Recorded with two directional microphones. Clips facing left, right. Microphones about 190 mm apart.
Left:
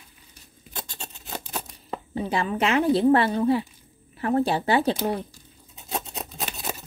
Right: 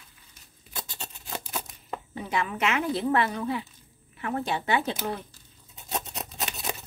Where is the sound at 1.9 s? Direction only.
30° left (ahead or behind).